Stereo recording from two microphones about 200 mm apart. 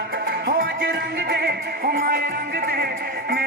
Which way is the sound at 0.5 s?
50° right (ahead or behind).